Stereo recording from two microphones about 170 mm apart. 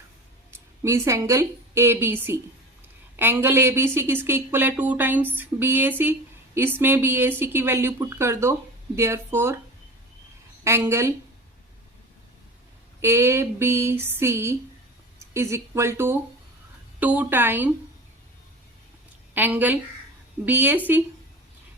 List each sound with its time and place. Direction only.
0.8 s speech: 20° right (ahead or behind)
10.6 s speech: 15° right (ahead or behind)
13.0 s speech: 15° right (ahead or behind)
19.3 s speech: 10° right (ahead or behind)